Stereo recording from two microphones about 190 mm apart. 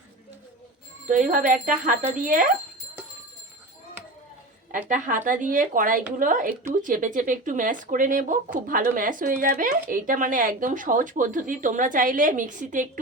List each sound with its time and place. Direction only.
1.0 s speech: 40° right (ahead or behind)
4.7 s speech: 45° right (ahead or behind)